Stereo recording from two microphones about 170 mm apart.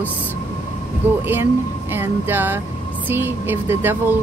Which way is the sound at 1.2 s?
10° right (ahead or behind).